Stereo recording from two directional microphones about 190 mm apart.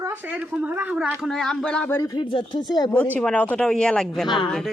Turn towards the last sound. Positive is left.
turn(degrees=25)  # may be behind; listen again after turning